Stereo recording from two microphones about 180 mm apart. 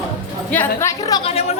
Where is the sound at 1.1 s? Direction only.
25° left (ahead or behind).